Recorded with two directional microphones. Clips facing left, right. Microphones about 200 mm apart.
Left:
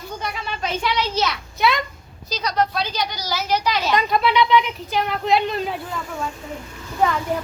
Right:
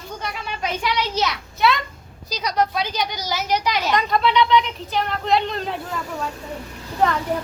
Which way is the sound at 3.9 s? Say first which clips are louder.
Even; 5° left (ahead or behind).